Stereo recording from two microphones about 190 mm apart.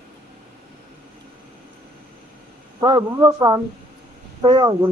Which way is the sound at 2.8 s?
20° right (ahead or behind).